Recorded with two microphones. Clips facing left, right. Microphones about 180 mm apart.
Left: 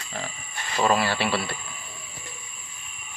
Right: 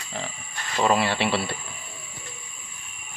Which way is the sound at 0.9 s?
25° right (ahead or behind).